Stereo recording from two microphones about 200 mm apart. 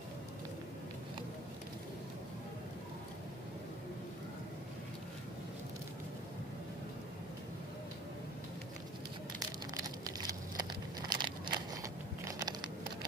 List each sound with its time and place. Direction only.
9.8 s crumpling: 20° right (ahead or behind)